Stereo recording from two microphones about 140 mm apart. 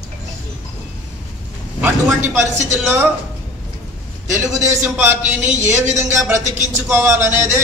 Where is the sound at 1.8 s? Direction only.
15° right (ahead or behind).